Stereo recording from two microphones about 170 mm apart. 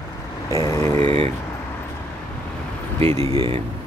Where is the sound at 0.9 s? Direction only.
35° right (ahead or behind).